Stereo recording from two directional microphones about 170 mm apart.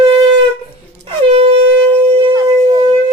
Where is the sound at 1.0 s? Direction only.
35° right (ahead or behind).